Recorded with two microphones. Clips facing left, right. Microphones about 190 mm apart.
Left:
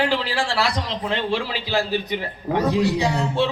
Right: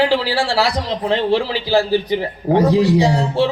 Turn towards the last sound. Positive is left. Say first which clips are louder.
# right 5 dB
turn(degrees=-35)  # may be behind; listen again after turning